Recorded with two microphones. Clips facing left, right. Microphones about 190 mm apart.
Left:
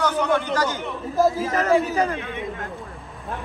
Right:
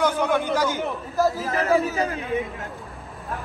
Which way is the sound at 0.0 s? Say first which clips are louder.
Even; 10° right (ahead or behind).